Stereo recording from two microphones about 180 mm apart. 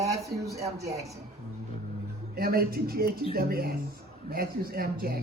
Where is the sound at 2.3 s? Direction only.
60° right (ahead or behind).